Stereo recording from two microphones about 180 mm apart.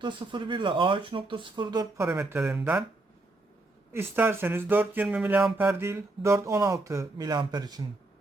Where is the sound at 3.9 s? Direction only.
10° right (ahead or behind).